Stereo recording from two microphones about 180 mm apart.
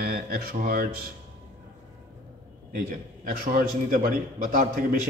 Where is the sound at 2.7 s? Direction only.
50° right (ahead or behind).